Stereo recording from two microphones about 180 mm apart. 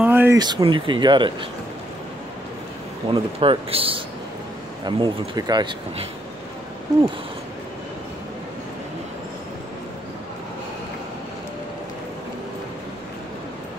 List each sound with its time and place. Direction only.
0.0 s a sound: 10° right (ahead or behind)
0.4 s speech: 25° right (ahead or behind)
3.1 s speech: 30° right (ahead or behind)